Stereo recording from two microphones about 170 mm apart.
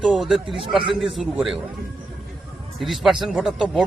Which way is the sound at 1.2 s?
5° right (ahead or behind).